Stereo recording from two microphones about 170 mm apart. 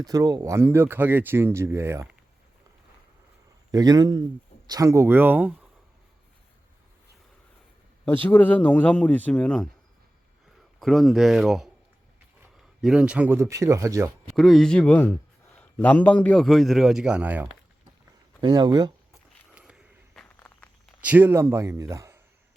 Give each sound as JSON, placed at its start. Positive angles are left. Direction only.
{"t": 0.0, "sound": "speech", "side_deg": -20}
{"t": 3.7, "sound": "speech", "side_deg": -20}
{"t": 8.0, "sound": "a man's voice", "side_deg": 10}
{"t": 10.8, "sound": "speech", "side_deg": 0}
{"t": 12.8, "sound": "speech", "side_deg": -5}
{"t": 14.3, "sound": "speech", "side_deg": 0}
{"t": 18.4, "sound": "speech", "side_deg": -25}
{"t": 19.5, "sound": "a sound", "side_deg": -5}
{"t": 20.2, "sound": "walk", "side_deg": 10}
{"t": 21.0, "sound": "speech", "side_deg": -10}